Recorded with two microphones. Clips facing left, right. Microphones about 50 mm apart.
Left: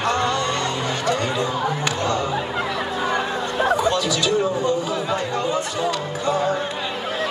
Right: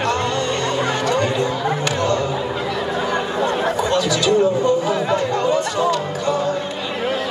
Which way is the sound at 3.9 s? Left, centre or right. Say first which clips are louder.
Right 3 dB; right.